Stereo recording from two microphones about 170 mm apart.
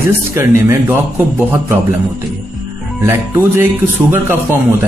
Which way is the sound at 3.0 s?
15° right (ahead or behind).